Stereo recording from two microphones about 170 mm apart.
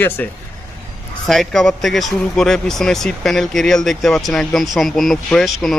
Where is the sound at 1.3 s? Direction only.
Centre (ahead or behind).